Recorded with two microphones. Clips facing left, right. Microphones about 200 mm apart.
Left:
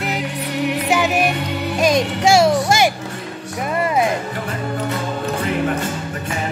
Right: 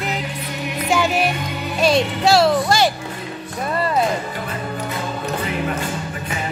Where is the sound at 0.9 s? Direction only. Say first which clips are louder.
Right 1 dB; 10° left (ahead or behind).